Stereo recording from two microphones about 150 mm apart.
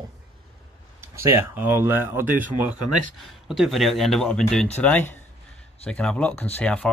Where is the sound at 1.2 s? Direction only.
15° right (ahead or behind).